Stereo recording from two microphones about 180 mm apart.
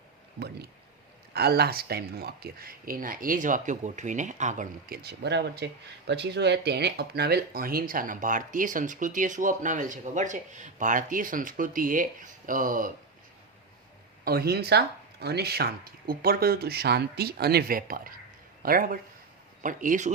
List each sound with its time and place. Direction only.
0.3 s speech: 60° right (ahead or behind); by 4.9 s 45° right (ahead or behind)
5.0 s speech: 65° right (ahead or behind); by 12.9 s 50° right (ahead or behind)
14.3 s speech: 60° right (ahead or behind)